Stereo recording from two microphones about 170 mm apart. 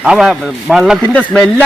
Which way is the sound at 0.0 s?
5° right (ahead or behind).